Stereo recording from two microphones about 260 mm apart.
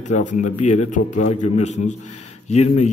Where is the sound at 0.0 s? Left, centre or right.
Left.